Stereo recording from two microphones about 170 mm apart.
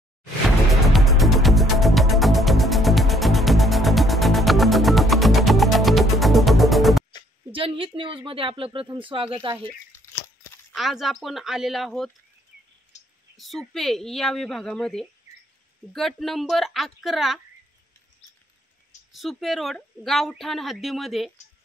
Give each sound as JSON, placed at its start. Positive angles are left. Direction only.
{"t": 0.8, "sound": "music", "side_deg": 0}
{"t": 7.5, "sound": "speech", "side_deg": -30}
{"t": 10.7, "sound": "a woman's voice", "side_deg": 0}
{"t": 12.9, "sound": "clicking", "side_deg": 40}
{"t": 13.4, "sound": "a woman's voice", "side_deg": 0}
{"t": 19.1, "sound": "a woman's voice", "side_deg": 0}